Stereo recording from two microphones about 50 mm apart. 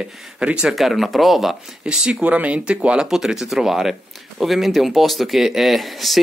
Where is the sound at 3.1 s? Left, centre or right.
Centre.